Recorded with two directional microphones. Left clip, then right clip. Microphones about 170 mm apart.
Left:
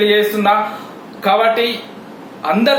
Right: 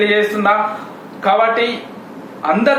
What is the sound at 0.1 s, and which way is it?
A man's voice, 20° left (ahead or behind).